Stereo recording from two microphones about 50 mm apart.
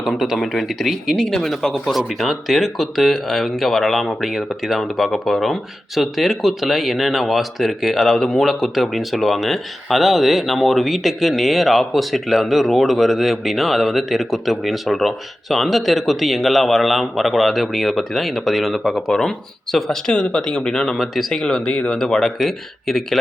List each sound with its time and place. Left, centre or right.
0.2 s speech: centre
21.4 s speech: centre